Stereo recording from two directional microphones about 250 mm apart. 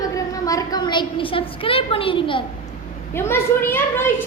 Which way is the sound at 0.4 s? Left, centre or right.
Centre.